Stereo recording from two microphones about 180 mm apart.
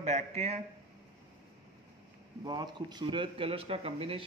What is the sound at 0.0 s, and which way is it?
Speech, 40° right (ahead or behind).